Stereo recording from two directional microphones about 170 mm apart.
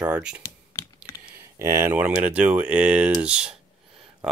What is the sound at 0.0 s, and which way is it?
Speech, 5° right (ahead or behind).